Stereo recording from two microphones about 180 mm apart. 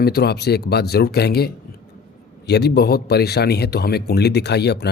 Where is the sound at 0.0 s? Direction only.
60° left (ahead or behind).